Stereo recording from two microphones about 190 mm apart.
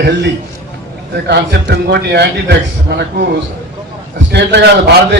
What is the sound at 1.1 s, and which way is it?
A man's voice, 60° right (ahead or behind).